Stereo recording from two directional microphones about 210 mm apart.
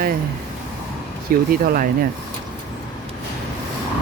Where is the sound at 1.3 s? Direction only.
45° right (ahead or behind).